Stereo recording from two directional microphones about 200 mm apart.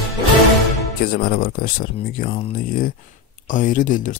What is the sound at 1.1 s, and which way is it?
Speech, 45° left (ahead or behind).